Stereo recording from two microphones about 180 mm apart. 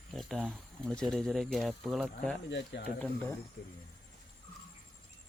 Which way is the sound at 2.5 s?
75° left (ahead or behind).